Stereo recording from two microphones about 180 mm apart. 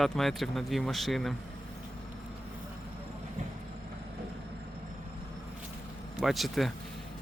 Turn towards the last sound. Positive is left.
turn(degrees=0)  # may be behind; listen again after turning